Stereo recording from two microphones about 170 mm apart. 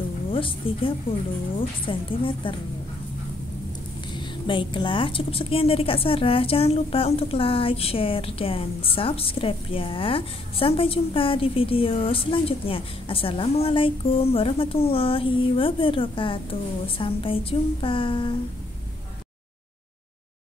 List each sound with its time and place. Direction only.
0.3 s a woman's voice: 30° left (ahead or behind)
4.1 s a woman's voice: 30° left (ahead or behind)